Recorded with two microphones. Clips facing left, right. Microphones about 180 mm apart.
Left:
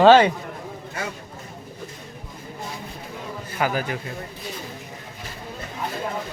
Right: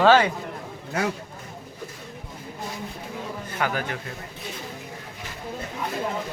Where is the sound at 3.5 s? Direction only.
10° left (ahead or behind).